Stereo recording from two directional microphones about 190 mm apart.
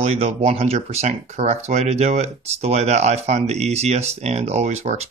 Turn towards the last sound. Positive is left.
turn(degrees=-35)  # may be behind; listen again after turning